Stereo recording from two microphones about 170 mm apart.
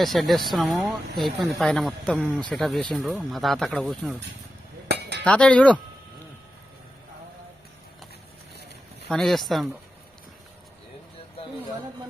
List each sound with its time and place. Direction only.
0.0 s speech: centre (ahead or behind)
4.9 s chink: 75° right (ahead or behind)
5.2 s chink: 5° left (ahead or behind)
9.0 s speech: centre (ahead or behind)